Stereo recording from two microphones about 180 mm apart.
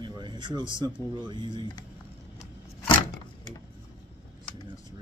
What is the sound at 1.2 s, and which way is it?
Speech, 25° right (ahead or behind).